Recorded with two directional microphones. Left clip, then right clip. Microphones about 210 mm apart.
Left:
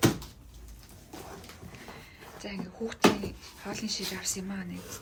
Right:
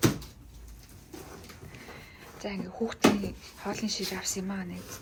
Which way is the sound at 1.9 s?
10° left (ahead or behind).